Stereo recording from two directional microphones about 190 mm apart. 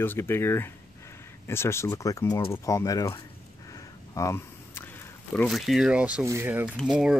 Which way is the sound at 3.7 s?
15° left (ahead or behind).